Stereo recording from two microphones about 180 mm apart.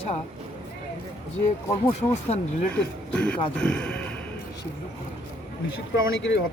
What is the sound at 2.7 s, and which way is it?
Speech, 5° left (ahead or behind).